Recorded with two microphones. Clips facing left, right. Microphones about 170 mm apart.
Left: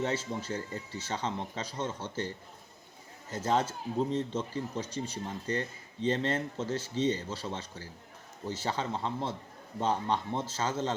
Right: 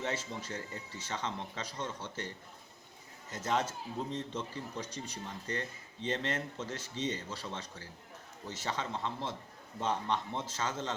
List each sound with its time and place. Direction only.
0.0 s speech: 30° left (ahead or behind)
3.3 s speech: 30° left (ahead or behind)